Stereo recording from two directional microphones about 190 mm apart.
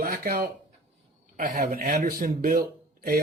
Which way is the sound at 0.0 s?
50° right (ahead or behind).